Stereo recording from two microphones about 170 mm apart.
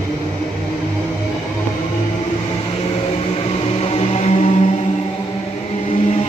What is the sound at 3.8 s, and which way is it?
Music, 40° left (ahead or behind).